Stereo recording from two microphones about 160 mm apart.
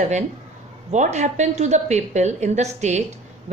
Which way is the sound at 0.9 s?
45° right (ahead or behind).